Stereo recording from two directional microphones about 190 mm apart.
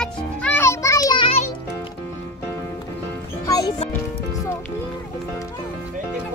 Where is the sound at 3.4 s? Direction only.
20° left (ahead or behind).